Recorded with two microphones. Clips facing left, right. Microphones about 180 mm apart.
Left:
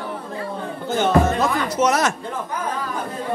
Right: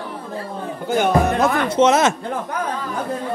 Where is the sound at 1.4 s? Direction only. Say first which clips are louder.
Right 4 dB; 25° right (ahead or behind).